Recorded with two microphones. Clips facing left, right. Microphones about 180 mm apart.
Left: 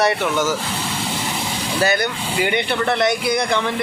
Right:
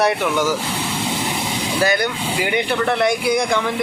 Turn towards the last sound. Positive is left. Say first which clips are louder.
# right 1 dB
turn(degrees=-10)  # may be behind; listen again after turning